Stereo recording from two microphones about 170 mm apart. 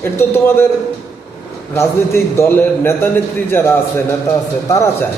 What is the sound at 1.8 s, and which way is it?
A man's voice, 15° left (ahead or behind).